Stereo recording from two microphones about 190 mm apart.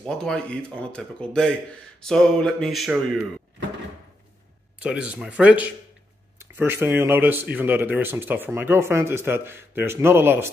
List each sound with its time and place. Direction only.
0.0 s speech: 5° left (ahead or behind)
4.7 s speech: 5° right (ahead or behind)